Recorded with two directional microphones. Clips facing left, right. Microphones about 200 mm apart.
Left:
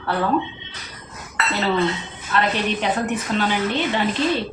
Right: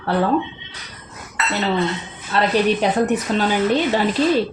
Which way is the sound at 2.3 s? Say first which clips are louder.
Right 4 dB; 30° right (ahead or behind).